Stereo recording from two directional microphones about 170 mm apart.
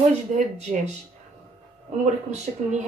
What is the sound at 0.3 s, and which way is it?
Speech, 45° right (ahead or behind).